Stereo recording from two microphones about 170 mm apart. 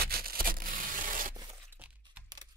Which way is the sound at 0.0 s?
60° right (ahead or behind).